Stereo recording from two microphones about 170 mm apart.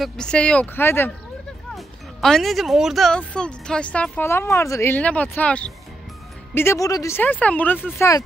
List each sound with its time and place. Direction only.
0.0 s speech: 5° left (ahead or behind)
1.8 s speech: centre (ahead or behind)